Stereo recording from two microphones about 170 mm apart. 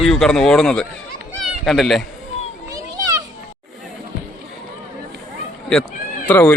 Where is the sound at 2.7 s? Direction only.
20° right (ahead or behind).